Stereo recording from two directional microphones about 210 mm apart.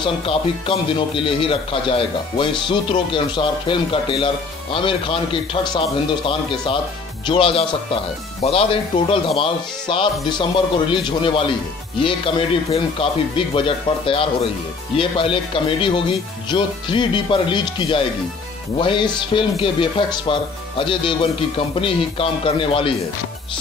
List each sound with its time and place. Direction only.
0.0 s speech: 25° left (ahead or behind)